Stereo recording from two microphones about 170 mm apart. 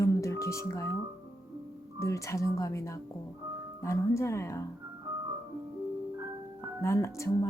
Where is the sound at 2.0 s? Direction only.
15° left (ahead or behind).